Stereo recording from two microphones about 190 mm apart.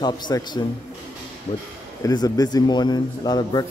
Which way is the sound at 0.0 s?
20° left (ahead or behind).